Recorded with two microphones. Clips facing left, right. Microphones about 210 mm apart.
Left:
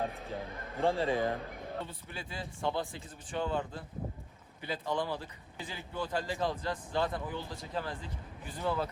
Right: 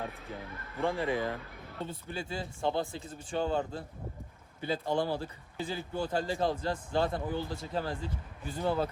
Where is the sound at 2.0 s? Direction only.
30° right (ahead or behind).